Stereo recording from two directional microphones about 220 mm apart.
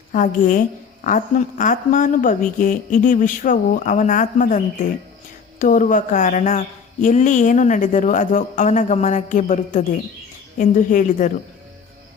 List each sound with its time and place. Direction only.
0.1 s a woman's voice: 35° left (ahead or behind)